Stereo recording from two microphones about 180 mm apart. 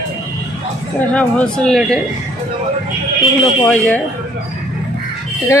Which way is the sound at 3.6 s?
10° left (ahead or behind).